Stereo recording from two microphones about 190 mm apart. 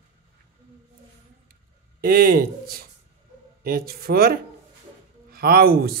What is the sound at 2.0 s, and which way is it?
Speech, 50° right (ahead or behind).